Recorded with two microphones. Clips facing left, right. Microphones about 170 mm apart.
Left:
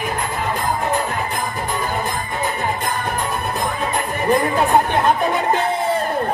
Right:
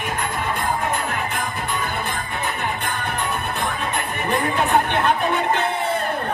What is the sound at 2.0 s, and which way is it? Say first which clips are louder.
Music: left 3 dB; 40° left (ahead or behind).